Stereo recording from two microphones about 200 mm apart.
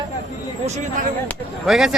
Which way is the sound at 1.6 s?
Centre (ahead or behind).